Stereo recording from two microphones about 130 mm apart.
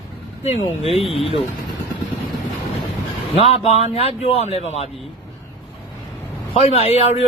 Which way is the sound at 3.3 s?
50° left (ahead or behind).